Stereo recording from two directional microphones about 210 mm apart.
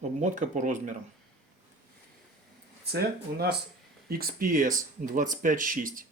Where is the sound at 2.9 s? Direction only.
50° right (ahead or behind).